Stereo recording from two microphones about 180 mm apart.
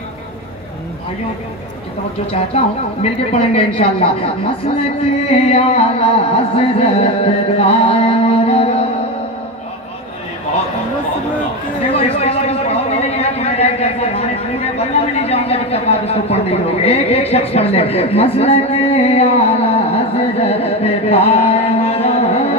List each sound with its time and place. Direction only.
2.3 s music: 35° left (ahead or behind)
5.5 s music: 35° left (ahead or behind)
12.2 s a sound: 35° left (ahead or behind)